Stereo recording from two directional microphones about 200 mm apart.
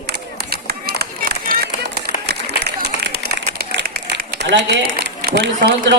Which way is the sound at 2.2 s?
55° right (ahead or behind).